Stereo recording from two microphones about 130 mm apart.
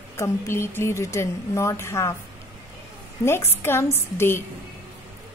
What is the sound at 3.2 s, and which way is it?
A woman's voice, 20° left (ahead or behind).